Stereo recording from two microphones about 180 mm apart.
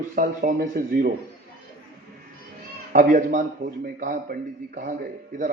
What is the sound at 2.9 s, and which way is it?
A man's voice, 50° right (ahead or behind).